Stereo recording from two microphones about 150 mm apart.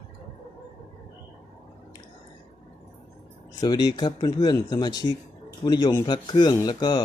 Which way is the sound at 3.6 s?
25° left (ahead or behind).